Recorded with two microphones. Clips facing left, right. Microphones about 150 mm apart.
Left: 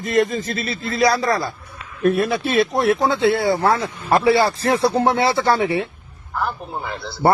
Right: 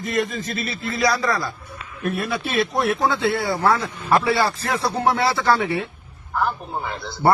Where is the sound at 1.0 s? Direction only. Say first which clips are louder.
Left 4 dB; 30° left (ahead or behind).